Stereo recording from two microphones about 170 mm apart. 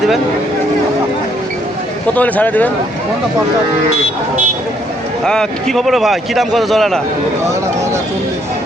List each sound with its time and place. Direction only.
2.1 s speech: 10° left (ahead or behind)
5.2 s speech: 5° left (ahead or behind)